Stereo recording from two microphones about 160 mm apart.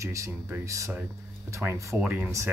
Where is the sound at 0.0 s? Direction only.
20° right (ahead or behind).